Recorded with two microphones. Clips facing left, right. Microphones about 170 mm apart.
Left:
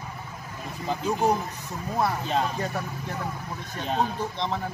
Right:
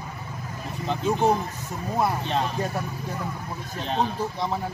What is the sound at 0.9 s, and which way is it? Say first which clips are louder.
Speech: right 2 dB; 5° left (ahead or behind).